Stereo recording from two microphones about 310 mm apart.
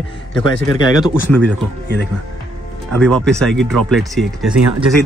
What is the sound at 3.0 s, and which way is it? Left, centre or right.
Speech, centre.